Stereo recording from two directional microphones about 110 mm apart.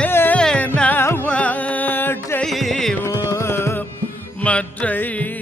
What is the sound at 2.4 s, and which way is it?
Music, centre (ahead or behind).